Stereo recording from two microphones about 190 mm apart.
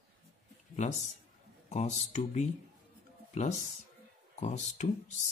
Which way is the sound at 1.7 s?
40° left (ahead or behind).